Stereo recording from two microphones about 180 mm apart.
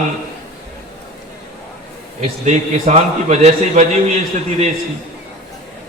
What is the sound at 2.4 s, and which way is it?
A man's voice, 40° right (ahead or behind).